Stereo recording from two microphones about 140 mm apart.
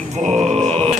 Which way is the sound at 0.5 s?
50° right (ahead or behind).